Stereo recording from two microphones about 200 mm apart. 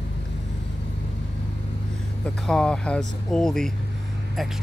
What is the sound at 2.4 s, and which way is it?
Speech, 5° left (ahead or behind).